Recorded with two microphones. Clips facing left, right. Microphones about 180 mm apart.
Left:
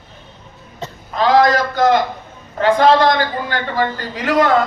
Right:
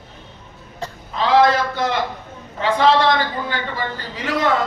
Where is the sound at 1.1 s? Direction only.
45° left (ahead or behind).